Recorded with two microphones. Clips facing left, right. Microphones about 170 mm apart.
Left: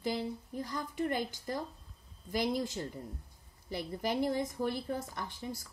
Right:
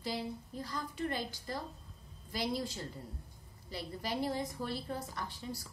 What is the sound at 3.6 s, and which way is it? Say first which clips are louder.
A woman's voice: left 5 dB; 20° left (ahead or behind).